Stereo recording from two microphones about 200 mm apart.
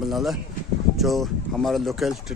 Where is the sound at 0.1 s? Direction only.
Centre (ahead or behind).